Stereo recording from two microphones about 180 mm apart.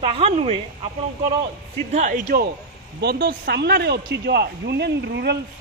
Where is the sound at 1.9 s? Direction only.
45° right (ahead or behind).